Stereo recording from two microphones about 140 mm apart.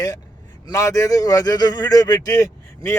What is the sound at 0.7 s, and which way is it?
Speech, 20° left (ahead or behind).